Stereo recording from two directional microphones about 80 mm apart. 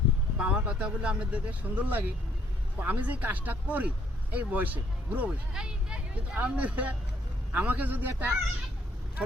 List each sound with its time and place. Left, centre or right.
0.3 s speech: centre